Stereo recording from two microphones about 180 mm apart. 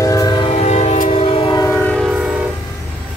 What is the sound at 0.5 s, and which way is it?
Train, 40° left (ahead or behind).